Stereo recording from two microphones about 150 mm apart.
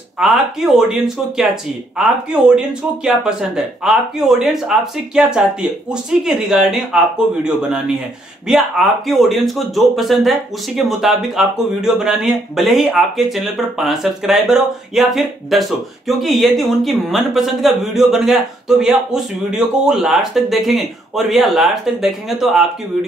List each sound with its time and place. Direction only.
0.2 s speech: centre (ahead or behind)
8.5 s speech: centre (ahead or behind)